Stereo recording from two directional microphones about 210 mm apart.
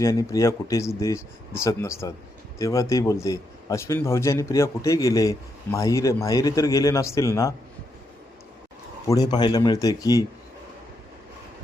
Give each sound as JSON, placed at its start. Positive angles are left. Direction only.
{"t": 0.0, "sound": "a man's voice", "side_deg": 15}
{"t": 9.0, "sound": "a man's voice", "side_deg": 15}